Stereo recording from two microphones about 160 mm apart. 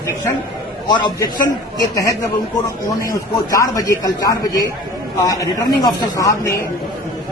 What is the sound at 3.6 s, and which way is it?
A man's voice, 20° left (ahead or behind).